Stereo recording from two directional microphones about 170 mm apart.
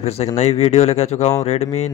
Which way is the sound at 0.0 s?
40° left (ahead or behind).